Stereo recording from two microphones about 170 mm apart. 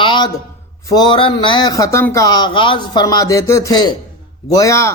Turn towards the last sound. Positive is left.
turn(degrees=15)  # may be behind; listen again after turning